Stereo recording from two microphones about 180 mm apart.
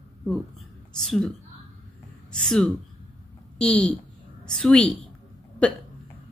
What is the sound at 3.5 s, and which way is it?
A woman's voice, 5° left (ahead or behind).